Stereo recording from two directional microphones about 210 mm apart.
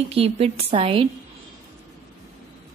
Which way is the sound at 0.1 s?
30° right (ahead or behind).